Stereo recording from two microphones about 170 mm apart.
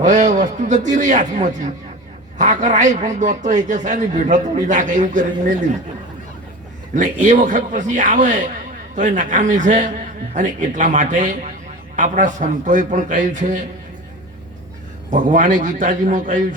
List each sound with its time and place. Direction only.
0.0 s a man's voice: 45° right (ahead or behind)
6.9 s a man's voice: 45° right (ahead or behind)
15.1 s a man's voice: 50° right (ahead or behind)